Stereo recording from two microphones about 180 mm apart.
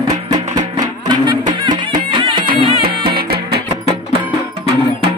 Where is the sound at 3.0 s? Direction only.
60° right (ahead or behind).